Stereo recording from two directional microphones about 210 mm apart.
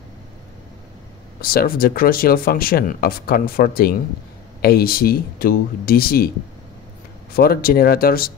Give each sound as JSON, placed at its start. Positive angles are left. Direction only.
{"t": 1.4, "sound": "speech", "side_deg": 45}
{"t": 7.3, "sound": "speech", "side_deg": 45}